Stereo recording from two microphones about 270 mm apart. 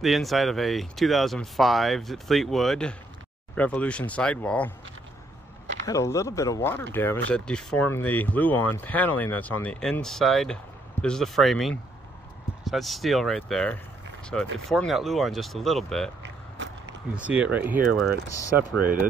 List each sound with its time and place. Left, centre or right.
0.0 s speech: centre
5.9 s speech: centre
16.2 s a sound: right
17.1 s speech: centre